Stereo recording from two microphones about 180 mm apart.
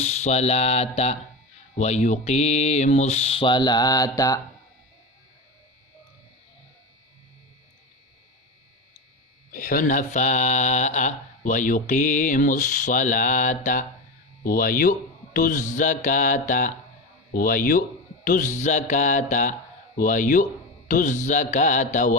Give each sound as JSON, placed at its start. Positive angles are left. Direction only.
{"t": 0.0, "sound": "speech", "side_deg": 40}
{"t": 9.5, "sound": "speech", "side_deg": 50}